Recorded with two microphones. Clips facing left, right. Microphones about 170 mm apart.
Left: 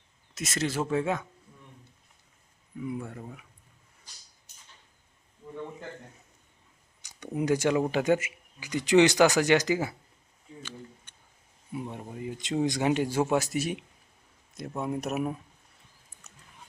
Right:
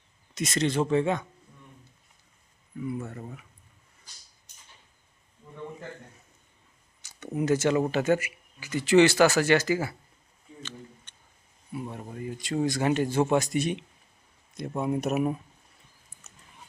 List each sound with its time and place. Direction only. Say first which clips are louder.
0.3 s speech: right 4 dB; centre (ahead or behind)
2.8 s speech: right 1 dB; 10° left (ahead or behind)
7.0 s speech: right 1 dB; 15° left (ahead or behind)
10.6 s a sound: right 1 dB; 10° left (ahead or behind)
12.6 s speech: right 1 dB; 15° left (ahead or behind); by 15.4 s centre (ahead or behind)